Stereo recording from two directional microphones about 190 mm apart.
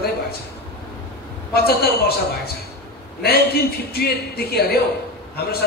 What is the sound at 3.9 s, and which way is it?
Speech, 55° left (ahead or behind).